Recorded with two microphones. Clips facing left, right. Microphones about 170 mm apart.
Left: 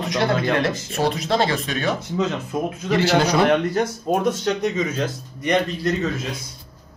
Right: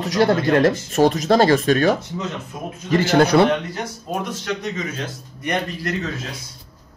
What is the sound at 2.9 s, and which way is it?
Speech, 55° right (ahead or behind).